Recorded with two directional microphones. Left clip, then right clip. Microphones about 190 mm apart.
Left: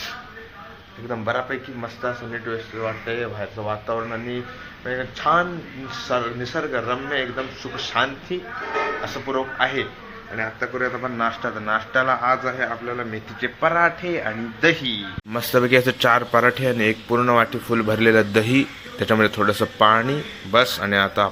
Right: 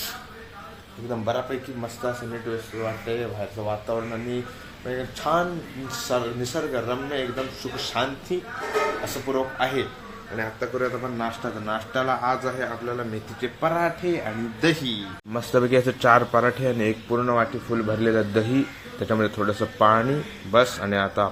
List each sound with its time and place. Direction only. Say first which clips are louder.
1.1 s a man's voice: left 2 dB; 5° right (ahead or behind)
11.0 s a man's voice: left 5 dB; 5° right (ahead or behind)
15.3 s a man's voice: left 4 dB; centre (ahead or behind)
17.1 s speech: left 5 dB; 15° left (ahead or behind)